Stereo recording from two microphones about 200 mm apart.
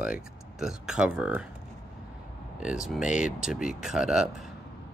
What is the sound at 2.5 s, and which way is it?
Speech, 5° right (ahead or behind).